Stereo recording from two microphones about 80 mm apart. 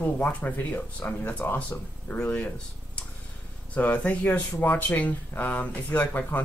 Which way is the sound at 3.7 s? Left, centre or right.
Centre.